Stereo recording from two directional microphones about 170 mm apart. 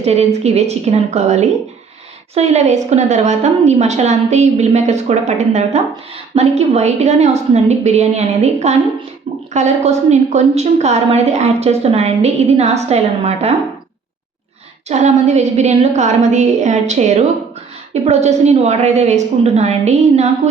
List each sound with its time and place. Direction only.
0.0 s a woman's voice: 40° right (ahead or behind)
14.8 s a woman's voice: 40° right (ahead or behind)